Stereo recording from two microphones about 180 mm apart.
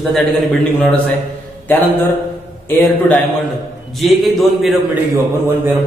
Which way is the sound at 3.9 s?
Centre (ahead or behind).